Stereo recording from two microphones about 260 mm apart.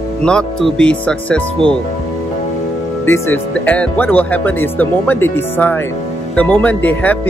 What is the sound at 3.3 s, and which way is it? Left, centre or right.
Speech, centre.